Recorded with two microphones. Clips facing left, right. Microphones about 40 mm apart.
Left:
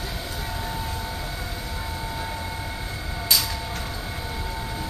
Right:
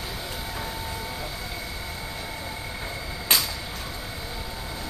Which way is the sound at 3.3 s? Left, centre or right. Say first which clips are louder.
Even; right.